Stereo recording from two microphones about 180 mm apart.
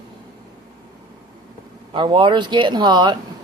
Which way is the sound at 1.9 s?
30° right (ahead or behind).